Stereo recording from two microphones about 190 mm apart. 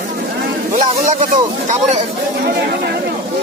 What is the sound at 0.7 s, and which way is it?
Speech, 40° right (ahead or behind).